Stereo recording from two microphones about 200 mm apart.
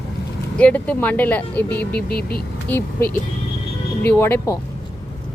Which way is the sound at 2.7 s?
10° left (ahead or behind).